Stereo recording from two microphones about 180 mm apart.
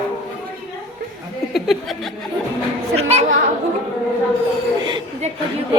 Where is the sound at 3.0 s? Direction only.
35° right (ahead or behind).